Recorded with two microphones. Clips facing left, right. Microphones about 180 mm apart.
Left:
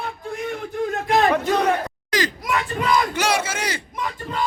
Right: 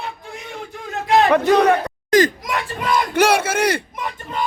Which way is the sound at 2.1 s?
50° right (ahead or behind).